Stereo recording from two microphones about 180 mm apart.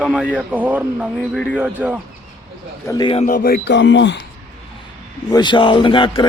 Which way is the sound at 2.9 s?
20° left (ahead or behind).